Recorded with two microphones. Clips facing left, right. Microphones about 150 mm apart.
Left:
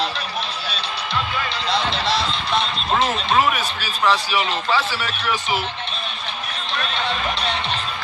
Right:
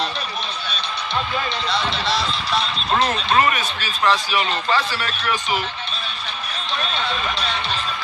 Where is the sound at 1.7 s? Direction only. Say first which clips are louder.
Left 3 dB; 25° left (ahead or behind).